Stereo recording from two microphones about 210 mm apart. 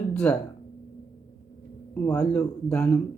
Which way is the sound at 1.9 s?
5° left (ahead or behind).